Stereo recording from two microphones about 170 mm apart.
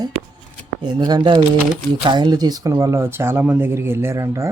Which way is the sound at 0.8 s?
25° right (ahead or behind).